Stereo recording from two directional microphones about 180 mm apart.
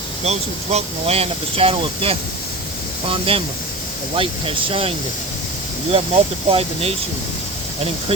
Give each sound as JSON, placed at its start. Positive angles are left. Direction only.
{"t": 0.3, "sound": "speech", "side_deg": -35}